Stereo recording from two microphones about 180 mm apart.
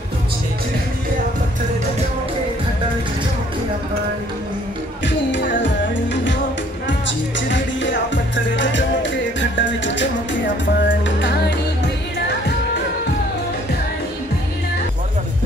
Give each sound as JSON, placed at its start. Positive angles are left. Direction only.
{"t": 6.9, "sound": "music", "side_deg": 90}